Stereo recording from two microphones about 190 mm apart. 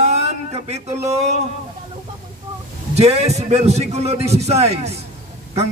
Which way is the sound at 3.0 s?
35° right (ahead or behind).